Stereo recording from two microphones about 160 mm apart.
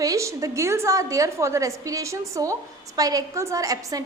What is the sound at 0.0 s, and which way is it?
A woman's voice, 20° right (ahead or behind).